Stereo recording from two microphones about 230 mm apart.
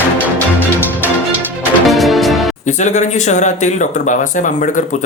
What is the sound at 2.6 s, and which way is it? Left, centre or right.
Speech, left.